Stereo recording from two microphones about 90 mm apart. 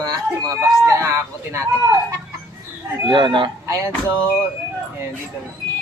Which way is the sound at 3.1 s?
65° right (ahead or behind).